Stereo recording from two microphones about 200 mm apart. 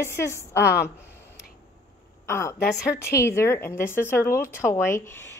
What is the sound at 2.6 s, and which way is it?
Speech, 55° left (ahead or behind).